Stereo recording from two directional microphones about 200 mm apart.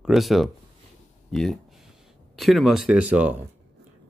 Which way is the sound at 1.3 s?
Centre (ahead or behind).